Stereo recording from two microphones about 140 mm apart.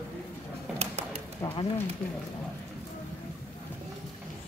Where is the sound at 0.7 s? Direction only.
45° right (ahead or behind).